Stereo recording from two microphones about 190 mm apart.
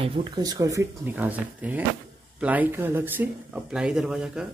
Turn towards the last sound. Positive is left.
turn(degrees=-5)  # may be behind; listen again after turning